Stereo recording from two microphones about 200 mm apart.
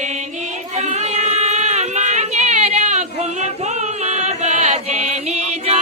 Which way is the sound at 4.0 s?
35° right (ahead or behind).